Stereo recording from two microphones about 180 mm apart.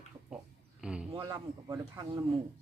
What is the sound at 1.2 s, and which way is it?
Speech, 20° right (ahead or behind).